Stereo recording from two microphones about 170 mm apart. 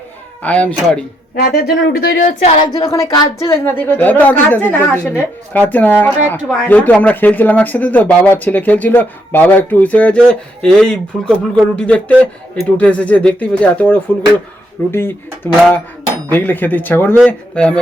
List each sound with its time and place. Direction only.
0.4 s speech: 10° left (ahead or behind)
1.4 s speech: 60° left (ahead or behind)
2.6 s speech: 25° left (ahead or behind); by 17.7 s 5° left (ahead or behind)